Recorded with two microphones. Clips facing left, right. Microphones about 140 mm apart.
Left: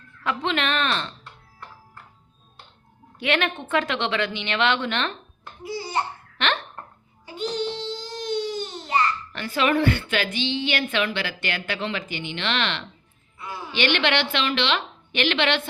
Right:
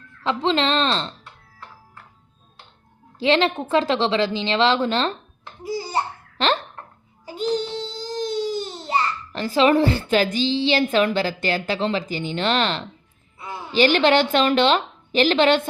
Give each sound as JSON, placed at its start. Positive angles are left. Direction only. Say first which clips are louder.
{"t": 0.2, "sound": "a woman's voice", "louder": "right 5 dB", "side_deg": -30}
{"t": 3.2, "sound": "a woman's voice", "louder": "right 6 dB", "side_deg": -30}
{"t": 5.6, "sound": "laughter", "louder": "right 2 dB", "side_deg": -35}
{"t": 7.3, "sound": "babbling", "louder": "right 3 dB", "side_deg": -40}
{"t": 10.3, "sound": "a woman's voice", "louder": "right 6 dB", "side_deg": -35}